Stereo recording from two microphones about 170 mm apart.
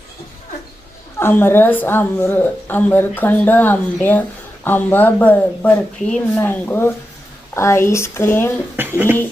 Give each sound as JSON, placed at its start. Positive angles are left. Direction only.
{"t": 1.2, "sound": "speech", "side_deg": 10}
{"t": 8.7, "sound": "speech", "side_deg": -10}